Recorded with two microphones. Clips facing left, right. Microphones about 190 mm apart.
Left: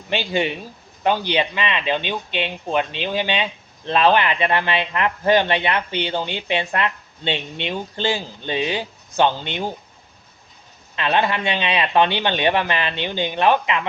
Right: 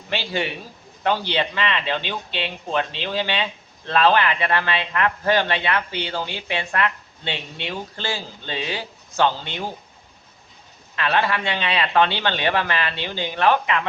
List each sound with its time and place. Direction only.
0.1 s a man's voice: 20° left (ahead or behind)
10.9 s a man's voice: 20° left (ahead or behind)